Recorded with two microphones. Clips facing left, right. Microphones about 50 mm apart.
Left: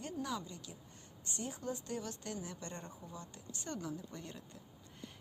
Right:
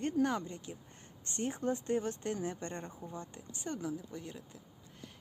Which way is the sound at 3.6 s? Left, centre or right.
Centre.